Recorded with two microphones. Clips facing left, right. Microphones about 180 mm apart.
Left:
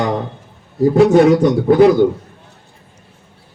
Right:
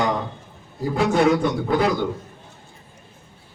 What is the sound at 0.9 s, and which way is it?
Speech, 45° left (ahead or behind).